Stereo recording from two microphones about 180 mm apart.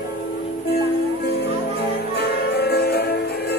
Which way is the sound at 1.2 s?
65° left (ahead or behind).